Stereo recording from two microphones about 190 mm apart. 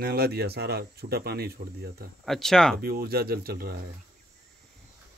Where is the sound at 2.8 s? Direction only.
55° right (ahead or behind).